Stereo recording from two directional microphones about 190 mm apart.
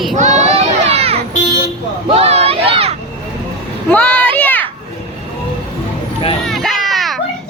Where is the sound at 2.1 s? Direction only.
35° right (ahead or behind).